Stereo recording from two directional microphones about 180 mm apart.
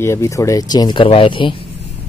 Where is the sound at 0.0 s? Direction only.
15° left (ahead or behind).